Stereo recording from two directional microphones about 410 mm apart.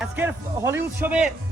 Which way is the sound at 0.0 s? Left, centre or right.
Centre.